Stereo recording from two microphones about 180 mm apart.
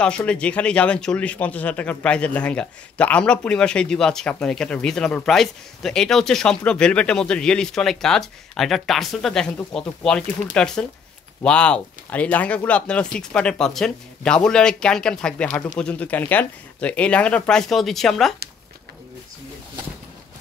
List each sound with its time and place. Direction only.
0.0 s speech: 5° left (ahead or behind)